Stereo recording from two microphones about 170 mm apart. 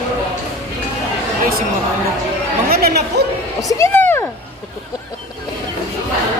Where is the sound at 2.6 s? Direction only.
65° right (ahead or behind).